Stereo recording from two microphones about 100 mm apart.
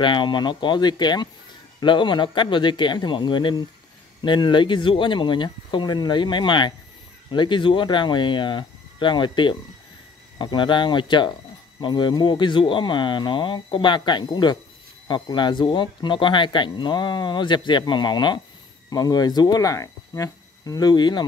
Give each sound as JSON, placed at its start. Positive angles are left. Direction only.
{"t": 0.0, "sound": "speech", "side_deg": 55}